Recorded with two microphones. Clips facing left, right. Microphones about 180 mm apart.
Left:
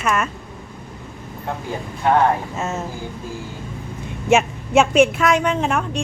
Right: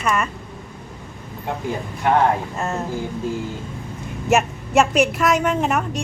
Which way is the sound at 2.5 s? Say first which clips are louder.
Even; centre (ahead or behind).